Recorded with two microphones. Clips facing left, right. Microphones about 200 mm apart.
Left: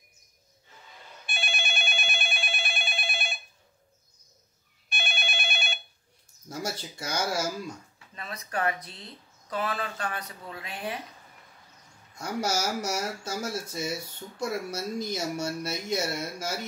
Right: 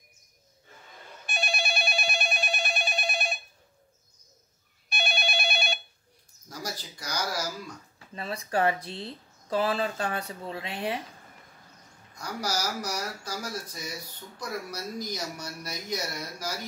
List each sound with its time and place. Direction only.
1.2 s telephone: 40° right (ahead or behind)
4.8 s telephone bell ringing: 35° right (ahead or behind)
6.5 s speech: 25° left (ahead or behind)
8.1 s speech: 30° right (ahead or behind)
12.1 s speech: 25° left (ahead or behind)